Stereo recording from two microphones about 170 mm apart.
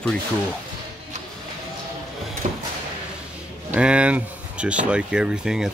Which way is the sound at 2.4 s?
45° right (ahead or behind).